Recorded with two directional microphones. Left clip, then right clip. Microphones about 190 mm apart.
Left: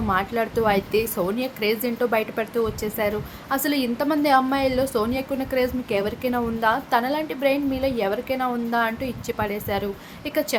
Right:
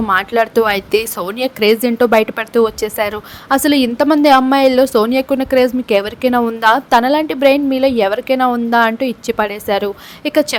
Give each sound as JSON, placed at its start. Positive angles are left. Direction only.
{"t": 0.1, "sound": "speech", "side_deg": -50}